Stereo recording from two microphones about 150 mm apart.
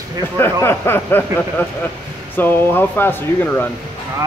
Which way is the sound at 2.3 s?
15° left (ahead or behind).